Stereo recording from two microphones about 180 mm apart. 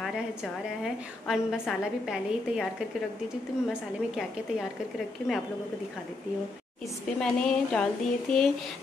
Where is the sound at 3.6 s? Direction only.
Centre (ahead or behind).